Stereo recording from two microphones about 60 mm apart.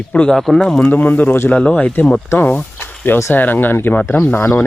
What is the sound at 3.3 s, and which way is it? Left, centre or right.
Speech, left.